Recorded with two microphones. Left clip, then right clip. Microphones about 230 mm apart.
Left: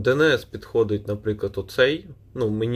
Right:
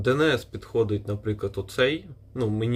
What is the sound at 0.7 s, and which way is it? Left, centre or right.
A man's voice, centre.